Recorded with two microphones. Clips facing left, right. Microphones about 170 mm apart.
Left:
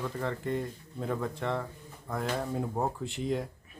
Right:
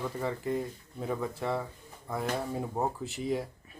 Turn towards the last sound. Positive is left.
turn(degrees=0)  # may be behind; listen again after turning